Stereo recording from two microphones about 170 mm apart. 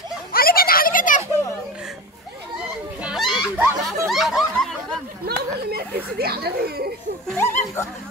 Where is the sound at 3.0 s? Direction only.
Centre (ahead or behind).